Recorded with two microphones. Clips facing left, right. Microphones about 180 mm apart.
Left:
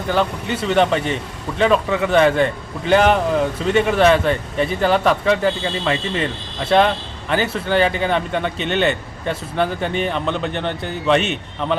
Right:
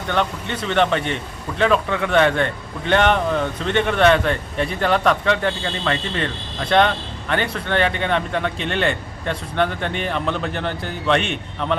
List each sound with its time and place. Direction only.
0.1 s speech: 5° left (ahead or behind)